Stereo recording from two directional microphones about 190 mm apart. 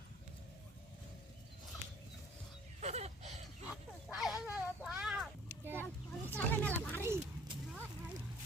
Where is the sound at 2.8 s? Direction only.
35° right (ahead or behind).